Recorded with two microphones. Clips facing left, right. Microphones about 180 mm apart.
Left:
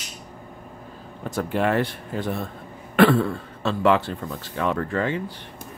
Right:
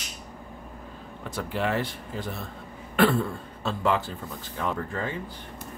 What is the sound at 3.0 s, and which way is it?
Speech, 80° left.